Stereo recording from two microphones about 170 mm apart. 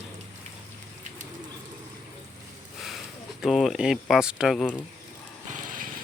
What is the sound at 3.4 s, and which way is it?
Speech, centre (ahead or behind).